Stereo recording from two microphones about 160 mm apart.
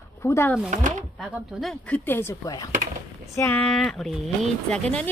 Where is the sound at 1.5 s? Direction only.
5° left (ahead or behind).